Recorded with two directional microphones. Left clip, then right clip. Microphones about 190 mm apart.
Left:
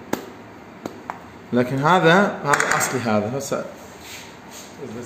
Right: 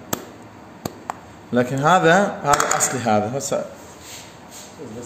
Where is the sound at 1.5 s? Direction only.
10° right (ahead or behind).